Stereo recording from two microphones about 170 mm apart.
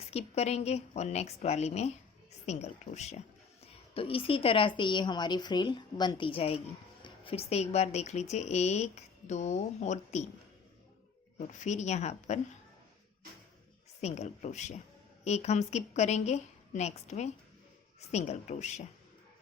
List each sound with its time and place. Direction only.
0.1 s a woman's voice: 40° left (ahead or behind)
11.3 s a woman's voice: 45° left (ahead or behind)
14.0 s a woman's voice: 40° left (ahead or behind)